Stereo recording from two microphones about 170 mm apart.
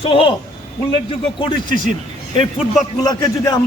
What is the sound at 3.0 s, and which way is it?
Speech, 20° left (ahead or behind).